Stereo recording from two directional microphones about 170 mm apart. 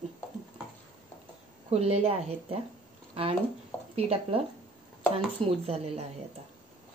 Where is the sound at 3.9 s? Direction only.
35° right (ahead or behind).